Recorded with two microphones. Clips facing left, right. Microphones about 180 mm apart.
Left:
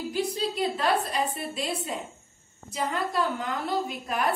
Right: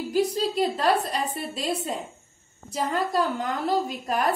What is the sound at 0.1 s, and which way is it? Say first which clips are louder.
A woman's voice: right 7 dB; 40° right (ahead or behind).